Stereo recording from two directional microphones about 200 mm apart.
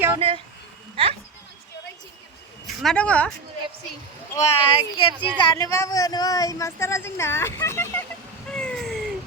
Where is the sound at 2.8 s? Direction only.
5° left (ahead or behind).